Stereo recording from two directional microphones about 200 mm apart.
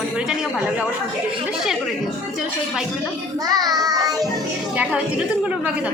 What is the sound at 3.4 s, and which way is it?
Child singing, 20° right (ahead or behind).